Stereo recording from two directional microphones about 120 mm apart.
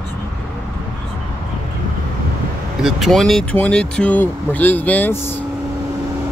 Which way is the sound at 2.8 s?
Centre (ahead or behind).